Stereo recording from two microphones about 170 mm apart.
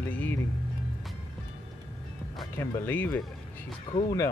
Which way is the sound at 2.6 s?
10° left (ahead or behind).